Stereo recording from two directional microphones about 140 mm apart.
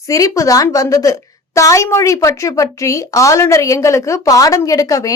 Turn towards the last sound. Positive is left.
turn(degrees=25)  # may be behind; listen again after turning